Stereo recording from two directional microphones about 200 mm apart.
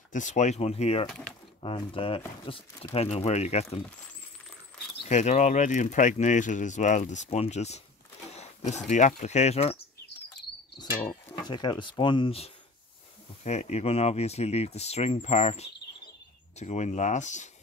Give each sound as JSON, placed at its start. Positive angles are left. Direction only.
{"t": 0.1, "sound": "speech", "side_deg": 35}
{"t": 1.0, "sound": "speech", "side_deg": 5}
{"t": 1.6, "sound": "speech", "side_deg": 25}
{"t": 5.0, "sound": "speech", "side_deg": 35}
{"t": 11.1, "sound": "speech", "side_deg": 20}